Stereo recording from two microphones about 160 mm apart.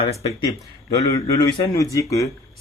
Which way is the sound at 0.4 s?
20° left (ahead or behind).